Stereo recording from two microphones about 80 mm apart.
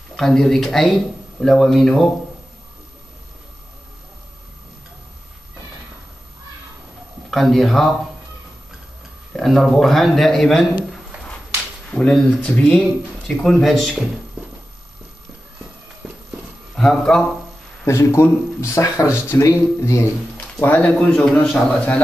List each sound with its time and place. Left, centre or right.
0.1 s a man's voice: centre
7.2 s a man's voice: centre
9.3 s a man's voice: centre
11.9 s a man's voice: centre
16.7 s speech: centre
17.8 s speech: left
20.5 s a man's voice: left